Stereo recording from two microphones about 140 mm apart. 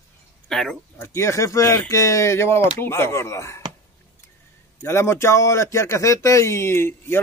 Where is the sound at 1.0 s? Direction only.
20° left (ahead or behind).